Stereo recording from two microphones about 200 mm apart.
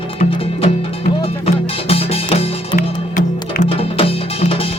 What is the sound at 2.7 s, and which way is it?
Music, 45° left (ahead or behind).